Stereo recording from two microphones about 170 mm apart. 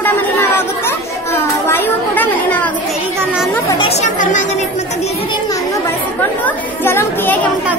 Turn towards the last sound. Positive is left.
turn(degrees=15)  # may be behind; listen again after turning